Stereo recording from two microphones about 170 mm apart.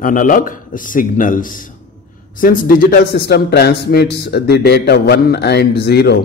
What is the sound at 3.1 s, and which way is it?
A man's voice, 75° left (ahead or behind).